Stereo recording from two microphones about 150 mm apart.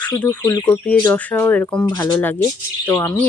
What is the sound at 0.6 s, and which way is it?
Speech, 10° left (ahead or behind).